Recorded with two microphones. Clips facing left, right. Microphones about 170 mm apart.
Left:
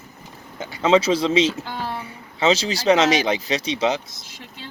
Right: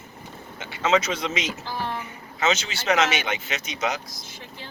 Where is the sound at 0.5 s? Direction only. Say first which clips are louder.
Left 5 dB; 40° left (ahead or behind).